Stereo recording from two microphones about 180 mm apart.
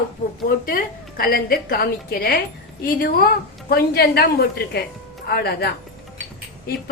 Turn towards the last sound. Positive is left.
turn(degrees=60)  # may be behind; listen again after turning